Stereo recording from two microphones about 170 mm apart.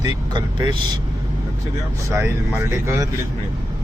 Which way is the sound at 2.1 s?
15° right (ahead or behind).